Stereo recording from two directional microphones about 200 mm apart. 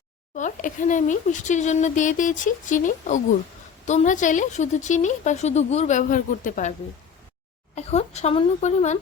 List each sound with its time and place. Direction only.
0.3 s a woman's voice: 40° left (ahead or behind)
7.8 s a woman's voice: 30° left (ahead or behind)